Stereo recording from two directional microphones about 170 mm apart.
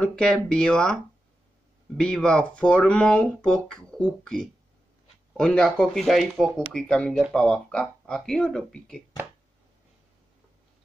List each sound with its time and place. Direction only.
0.0 s speech: 5° left (ahead or behind)
2.0 s speech: 5° left (ahead or behind)